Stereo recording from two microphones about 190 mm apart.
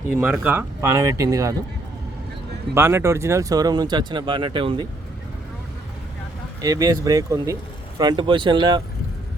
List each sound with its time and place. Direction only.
0.2 s speech: 10° right (ahead or behind)
2.7 s speech: 10° right (ahead or behind)
6.6 s speech: 20° right (ahead or behind)